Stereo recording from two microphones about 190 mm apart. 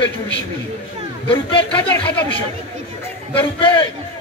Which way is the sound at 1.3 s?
25° left (ahead or behind).